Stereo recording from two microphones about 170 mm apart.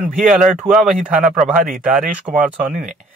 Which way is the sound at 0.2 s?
5° right (ahead or behind).